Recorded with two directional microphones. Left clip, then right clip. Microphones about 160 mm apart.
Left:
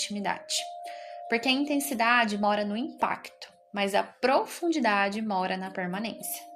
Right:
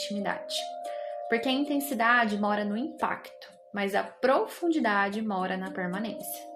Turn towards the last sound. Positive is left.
turn(degrees=40)  # may be behind; listen again after turning